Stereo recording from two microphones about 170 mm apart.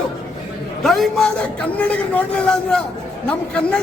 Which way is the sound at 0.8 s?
Centre (ahead or behind).